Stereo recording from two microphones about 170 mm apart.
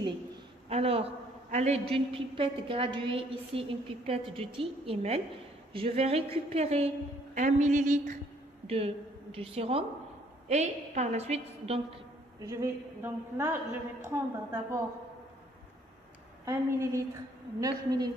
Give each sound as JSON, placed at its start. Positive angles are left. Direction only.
{"t": 0.7, "sound": "a woman's voice", "side_deg": -35}
{"t": 8.6, "sound": "a woman's voice", "side_deg": -35}
{"t": 12.4, "sound": "a woman's voice", "side_deg": -20}
{"t": 16.4, "sound": "a woman's voice", "side_deg": -20}